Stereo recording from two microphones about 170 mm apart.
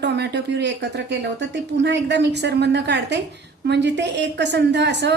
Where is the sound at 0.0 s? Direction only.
85° right.